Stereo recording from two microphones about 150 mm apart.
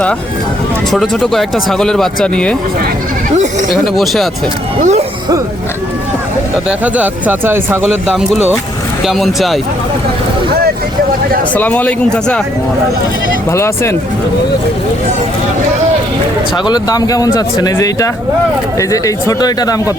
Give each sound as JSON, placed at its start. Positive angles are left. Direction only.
{"t": 0.9, "sound": "speech", "side_deg": 0}
{"t": 3.9, "sound": "speech", "side_deg": 0}
{"t": 4.8, "sound": "speech", "side_deg": -50}
{"t": 6.7, "sound": "speech", "side_deg": -10}
{"t": 7.9, "sound": "speech", "side_deg": 0}
{"t": 11.5, "sound": "speech", "side_deg": 10}
{"t": 13.5, "sound": "speech", "side_deg": 20}
{"t": 16.6, "sound": "speech", "side_deg": 25}